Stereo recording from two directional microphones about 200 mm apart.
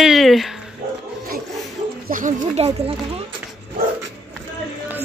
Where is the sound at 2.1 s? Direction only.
40° right (ahead or behind).